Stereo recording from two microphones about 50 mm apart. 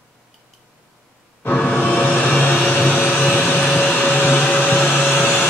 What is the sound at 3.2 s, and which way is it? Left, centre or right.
Vacuum cleaner, left.